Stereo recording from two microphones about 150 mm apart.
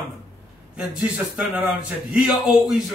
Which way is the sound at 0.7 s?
5° right (ahead or behind).